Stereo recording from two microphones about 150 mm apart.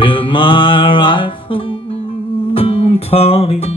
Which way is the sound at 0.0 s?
35° left (ahead or behind).